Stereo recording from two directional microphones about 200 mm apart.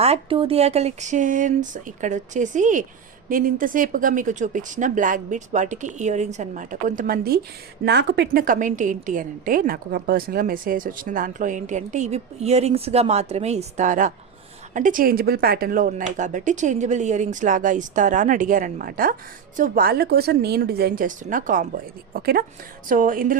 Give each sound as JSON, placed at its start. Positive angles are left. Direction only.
{"t": 0.0, "sound": "a woman's voice", "side_deg": -30}